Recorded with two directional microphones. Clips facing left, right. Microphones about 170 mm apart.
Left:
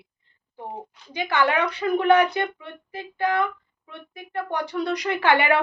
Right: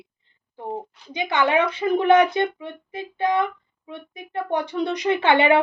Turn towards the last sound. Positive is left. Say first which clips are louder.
# right 3 dB
turn(degrees=-25)  # may be behind; listen again after turning